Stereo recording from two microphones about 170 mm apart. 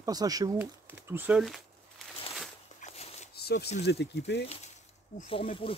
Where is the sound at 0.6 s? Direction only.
10° right (ahead or behind).